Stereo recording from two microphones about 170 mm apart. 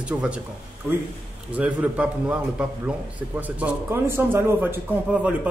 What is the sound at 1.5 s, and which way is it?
A man's voice, 10° right (ahead or behind).